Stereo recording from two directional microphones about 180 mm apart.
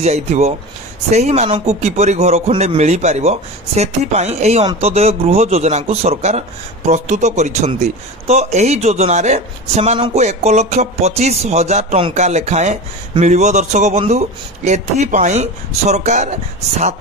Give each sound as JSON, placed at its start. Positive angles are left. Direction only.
{"t": 0.0, "sound": "a man's voice", "side_deg": -35}